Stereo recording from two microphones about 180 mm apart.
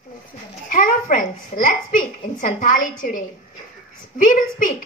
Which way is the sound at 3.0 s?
50° left (ahead or behind).